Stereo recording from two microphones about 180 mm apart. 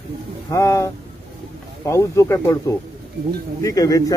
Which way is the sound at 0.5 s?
15° left (ahead or behind).